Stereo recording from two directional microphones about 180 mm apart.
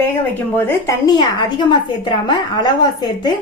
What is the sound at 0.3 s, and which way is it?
A woman's voice, 10° left (ahead or behind).